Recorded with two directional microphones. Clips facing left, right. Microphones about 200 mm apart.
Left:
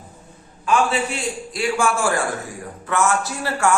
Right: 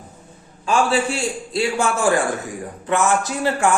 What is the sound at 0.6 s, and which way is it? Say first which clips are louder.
A man's voice: right 1 dB; 30° right (ahead or behind).